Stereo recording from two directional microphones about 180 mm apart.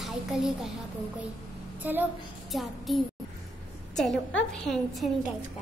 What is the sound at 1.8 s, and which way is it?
A woman's voice, 10° right (ahead or behind).